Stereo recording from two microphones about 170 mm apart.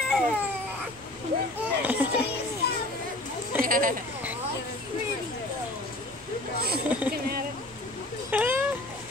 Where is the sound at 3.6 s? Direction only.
55° right (ahead or behind).